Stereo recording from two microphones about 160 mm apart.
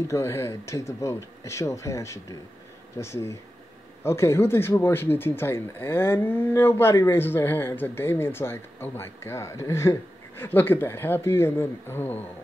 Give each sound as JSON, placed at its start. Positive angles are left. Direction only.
{"t": 0.1, "sound": "speech", "side_deg": 15}